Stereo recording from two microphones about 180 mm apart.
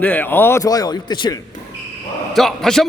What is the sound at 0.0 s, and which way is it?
A man's voice, 10° left (ahead or behind).